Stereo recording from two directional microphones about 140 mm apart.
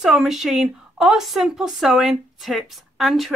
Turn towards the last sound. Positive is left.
turn(degrees=0)  # may be behind; listen again after turning